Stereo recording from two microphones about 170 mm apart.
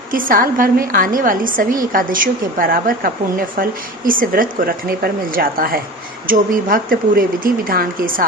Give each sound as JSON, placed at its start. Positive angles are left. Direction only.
{"t": 0.1, "sound": "a woman's voice", "side_deg": -55}